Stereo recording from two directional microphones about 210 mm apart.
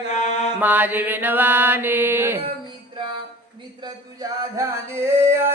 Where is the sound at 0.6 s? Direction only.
10° right (ahead or behind).